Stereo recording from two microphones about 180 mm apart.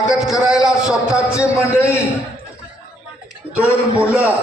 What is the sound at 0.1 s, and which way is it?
A man's voice, 5° right (ahead or behind).